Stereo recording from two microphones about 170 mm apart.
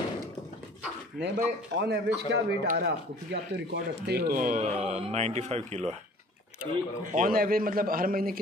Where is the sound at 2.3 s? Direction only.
85° right; by 5.8 s 40° right (ahead or behind).